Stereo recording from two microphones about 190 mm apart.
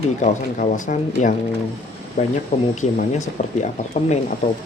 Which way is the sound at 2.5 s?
35° left (ahead or behind).